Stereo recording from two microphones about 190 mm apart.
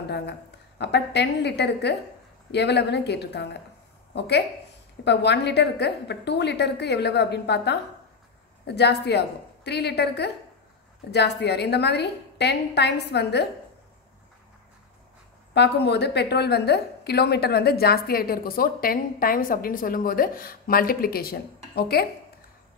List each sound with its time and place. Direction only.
0.1 s a woman's voice: 60° left (ahead or behind)
15.5 s a woman's voice: 60° left (ahead or behind)